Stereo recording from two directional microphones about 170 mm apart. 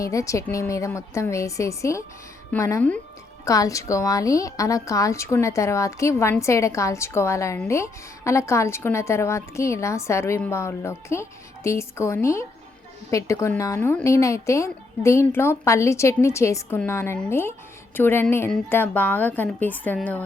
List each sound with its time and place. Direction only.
0.0 s a woman's voice: 20° left (ahead or behind)